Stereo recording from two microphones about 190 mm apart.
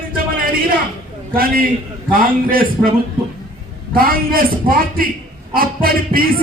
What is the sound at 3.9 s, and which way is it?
A man's voice, 50° right (ahead or behind).